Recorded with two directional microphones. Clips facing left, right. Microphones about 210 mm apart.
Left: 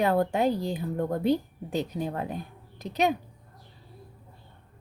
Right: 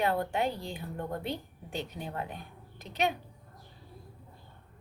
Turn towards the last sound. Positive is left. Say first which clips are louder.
# left 5 dB
turn(degrees=40)  # may be behind; listen again after turning